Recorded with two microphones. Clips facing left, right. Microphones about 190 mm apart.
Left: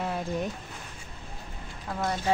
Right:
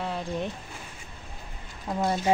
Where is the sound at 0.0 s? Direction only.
5° left (ahead or behind).